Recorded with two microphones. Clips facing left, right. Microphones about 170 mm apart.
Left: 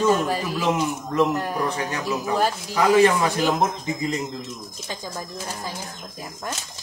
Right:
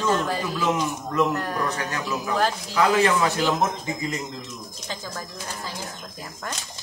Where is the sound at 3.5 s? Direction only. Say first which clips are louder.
Left 2 dB; 30° left (ahead or behind).